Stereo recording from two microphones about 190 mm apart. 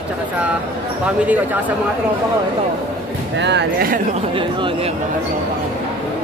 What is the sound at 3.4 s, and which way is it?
Speech, 65° right (ahead or behind).